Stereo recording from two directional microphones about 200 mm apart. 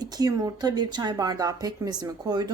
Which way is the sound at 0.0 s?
20° right (ahead or behind).